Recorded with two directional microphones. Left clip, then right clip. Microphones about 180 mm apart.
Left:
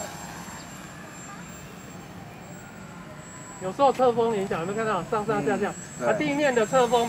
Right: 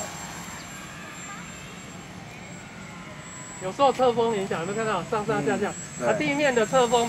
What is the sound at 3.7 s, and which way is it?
Speech, 25° left (ahead or behind).